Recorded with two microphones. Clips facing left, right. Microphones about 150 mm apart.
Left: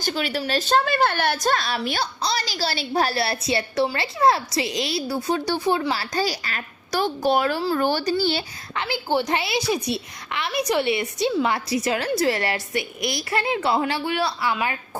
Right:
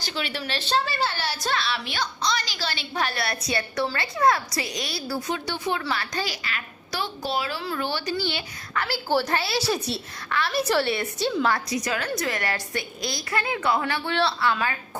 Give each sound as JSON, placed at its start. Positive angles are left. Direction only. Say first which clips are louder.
{"t": 0.0, "sound": "a woman's voice", "louder": "left 5 dB", "side_deg": 45}
{"t": 5.3, "sound": "a woman's voice", "louder": "left 7 dB", "side_deg": 35}
{"t": 7.6, "sound": "a woman's voice", "louder": "left 7 dB", "side_deg": 35}
{"t": 8.7, "sound": "a woman's voice", "louder": "left 1 dB", "side_deg": 20}
{"t": 14.1, "sound": "a woman's voice", "louder": "even", "side_deg": 10}